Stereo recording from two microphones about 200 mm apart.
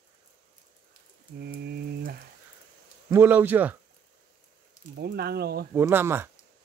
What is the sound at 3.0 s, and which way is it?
Speech, 10° right (ahead or behind).